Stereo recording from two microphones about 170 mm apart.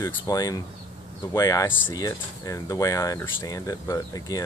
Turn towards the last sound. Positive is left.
turn(degrees=20)  # may be behind; listen again after turning